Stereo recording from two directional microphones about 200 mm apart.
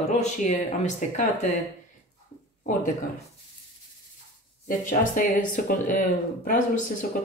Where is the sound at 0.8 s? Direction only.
35° left (ahead or behind).